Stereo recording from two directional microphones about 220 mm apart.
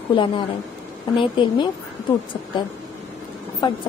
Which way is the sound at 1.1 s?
20° left (ahead or behind).